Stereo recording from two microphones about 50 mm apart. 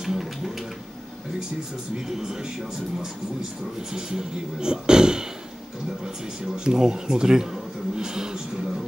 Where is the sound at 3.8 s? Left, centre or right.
Centre.